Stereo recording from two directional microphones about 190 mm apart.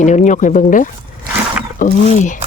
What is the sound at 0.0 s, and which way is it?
Speech, 40° left (ahead or behind).